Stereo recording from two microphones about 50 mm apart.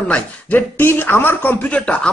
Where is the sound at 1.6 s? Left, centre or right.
Left.